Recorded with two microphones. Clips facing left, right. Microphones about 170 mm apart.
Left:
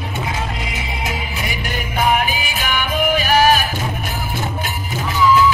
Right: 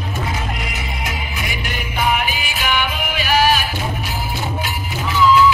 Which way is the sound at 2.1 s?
45° left (ahead or behind).